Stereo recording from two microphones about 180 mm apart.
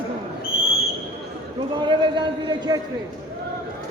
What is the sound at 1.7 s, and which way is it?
A man's voice, 25° right (ahead or behind).